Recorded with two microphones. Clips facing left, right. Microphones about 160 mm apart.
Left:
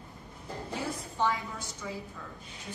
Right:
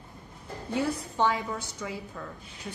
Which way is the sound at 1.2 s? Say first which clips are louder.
Right 3 dB; 70° right (ahead or behind).